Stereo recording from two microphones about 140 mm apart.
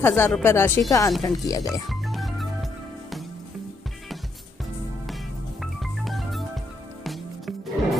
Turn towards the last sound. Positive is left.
turn(degrees=0)  # may be behind; listen again after turning